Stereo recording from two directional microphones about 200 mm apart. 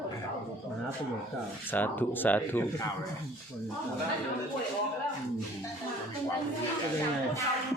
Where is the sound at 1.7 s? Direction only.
10° left (ahead or behind).